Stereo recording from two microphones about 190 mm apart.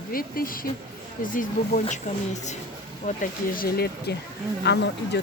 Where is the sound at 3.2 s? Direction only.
50° left (ahead or behind).